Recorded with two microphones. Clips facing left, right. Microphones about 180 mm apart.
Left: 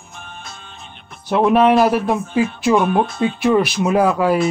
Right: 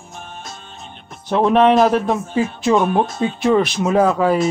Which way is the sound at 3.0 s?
40° right (ahead or behind).